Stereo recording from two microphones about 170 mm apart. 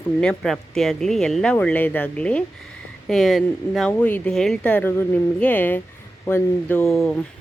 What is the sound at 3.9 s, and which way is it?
Speech, 10° left (ahead or behind).